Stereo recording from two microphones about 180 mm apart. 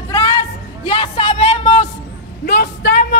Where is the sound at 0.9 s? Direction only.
30° left (ahead or behind).